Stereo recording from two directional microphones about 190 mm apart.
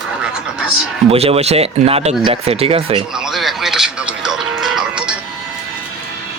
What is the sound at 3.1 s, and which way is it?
Music, centre (ahead or behind).